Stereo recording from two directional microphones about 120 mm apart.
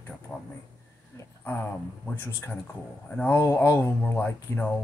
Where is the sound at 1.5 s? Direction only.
15° left (ahead or behind).